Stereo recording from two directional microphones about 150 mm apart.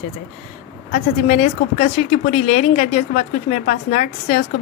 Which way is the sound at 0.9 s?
60° left (ahead or behind).